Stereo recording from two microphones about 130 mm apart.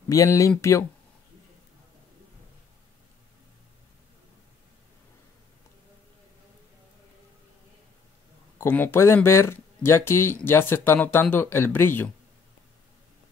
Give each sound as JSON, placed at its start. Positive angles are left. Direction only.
{"t": 0.1, "sound": "speech", "side_deg": 25}
{"t": 8.5, "sound": "speech", "side_deg": 15}